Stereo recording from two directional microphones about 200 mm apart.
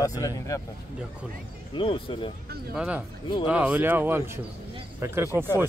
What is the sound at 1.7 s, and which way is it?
Speech, 25° left (ahead or behind).